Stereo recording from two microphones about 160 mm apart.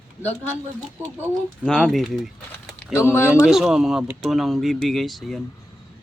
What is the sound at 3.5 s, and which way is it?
Speech, 5° right (ahead or behind).